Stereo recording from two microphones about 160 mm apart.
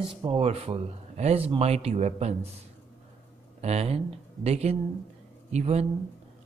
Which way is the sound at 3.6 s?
40° right (ahead or behind).